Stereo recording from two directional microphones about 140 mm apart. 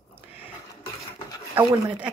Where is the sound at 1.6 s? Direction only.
10° right (ahead or behind).